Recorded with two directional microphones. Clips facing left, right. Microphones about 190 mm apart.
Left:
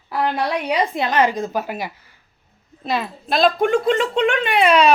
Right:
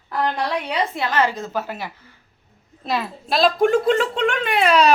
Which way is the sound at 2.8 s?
Centre (ahead or behind).